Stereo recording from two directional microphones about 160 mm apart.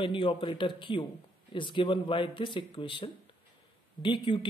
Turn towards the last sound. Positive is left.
turn(degrees=30)  # may be behind; listen again after turning